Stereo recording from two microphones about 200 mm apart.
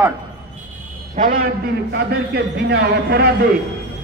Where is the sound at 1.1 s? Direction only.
45° right (ahead or behind).